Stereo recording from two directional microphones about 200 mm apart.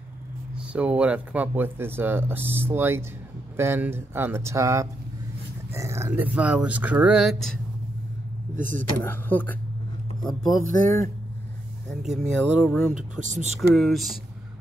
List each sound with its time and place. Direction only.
0.6 s speech: 5° right (ahead or behind)
8.5 s speech: 40° right (ahead or behind)
8.9 s speech: 10° left (ahead or behind)
10.6 s speech: 40° right (ahead or behind)
12.5 s speech: centre (ahead or behind)
13.2 s speech: 35° right (ahead or behind)
13.6 s speech: centre (ahead or behind)